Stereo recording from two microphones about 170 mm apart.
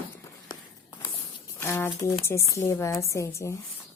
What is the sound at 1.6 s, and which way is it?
Speech, 15° left (ahead or behind).